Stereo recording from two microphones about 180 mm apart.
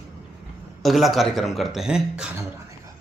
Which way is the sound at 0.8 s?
Centre (ahead or behind).